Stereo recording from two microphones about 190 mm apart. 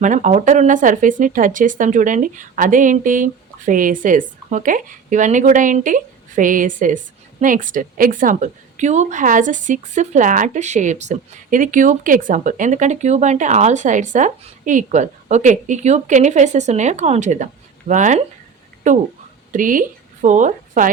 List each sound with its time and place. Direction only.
0.0 s a woman's voice: 40° right (ahead or behind)